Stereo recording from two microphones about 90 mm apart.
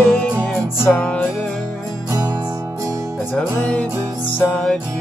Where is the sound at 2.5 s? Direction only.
40° right (ahead or behind).